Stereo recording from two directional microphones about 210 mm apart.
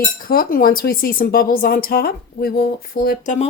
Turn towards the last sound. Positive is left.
turn(degrees=45)  # may be behind; listen again after turning